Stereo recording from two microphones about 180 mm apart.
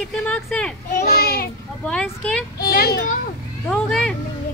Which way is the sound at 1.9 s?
5° left (ahead or behind).